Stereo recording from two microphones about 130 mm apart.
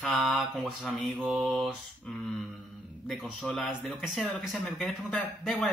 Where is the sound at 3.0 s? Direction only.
Centre (ahead or behind).